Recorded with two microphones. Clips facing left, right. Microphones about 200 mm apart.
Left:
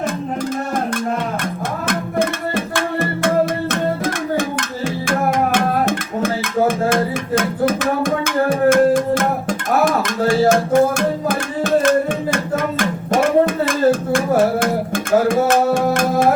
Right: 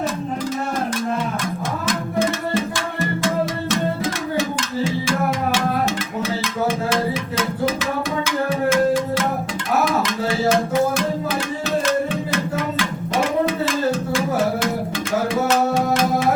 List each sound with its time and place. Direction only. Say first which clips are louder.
1.9 s music: left 1 dB; 55° left (ahead or behind)
12.8 s a sound: left 5 dB; 50° left (ahead or behind)
15.3 s music: left 4 dB; 50° left (ahead or behind)